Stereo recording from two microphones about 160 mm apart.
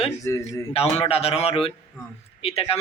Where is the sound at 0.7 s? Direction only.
40° left (ahead or behind).